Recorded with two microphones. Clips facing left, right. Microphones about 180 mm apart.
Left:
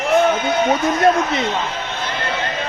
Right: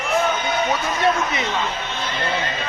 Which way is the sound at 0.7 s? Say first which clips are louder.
Left 6 dB; 45° left (ahead or behind).